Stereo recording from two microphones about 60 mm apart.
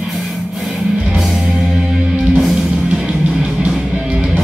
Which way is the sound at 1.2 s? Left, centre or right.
Centre.